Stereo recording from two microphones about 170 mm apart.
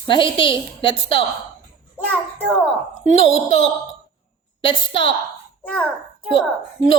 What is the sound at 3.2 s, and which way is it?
A woman's voice, 35° left (ahead or behind).